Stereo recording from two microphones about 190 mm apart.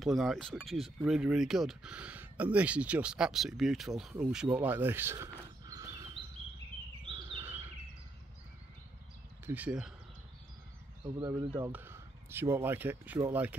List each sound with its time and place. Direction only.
0.0 s speech: centre (ahead or behind); by 6.2 s 20° right (ahead or behind)
7.2 s bird vocalization: 25° right (ahead or behind)
7.4 s a sound: 10° right (ahead or behind)
9.5 s speech: 5° right (ahead or behind)
11.5 s speech: 10° right (ahead or behind)